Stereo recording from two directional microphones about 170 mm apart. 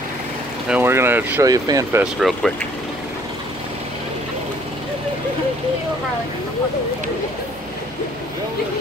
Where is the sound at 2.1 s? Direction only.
Centre (ahead or behind).